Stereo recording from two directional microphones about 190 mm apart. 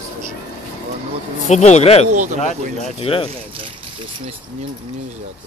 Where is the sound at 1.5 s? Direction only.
35° left (ahead or behind).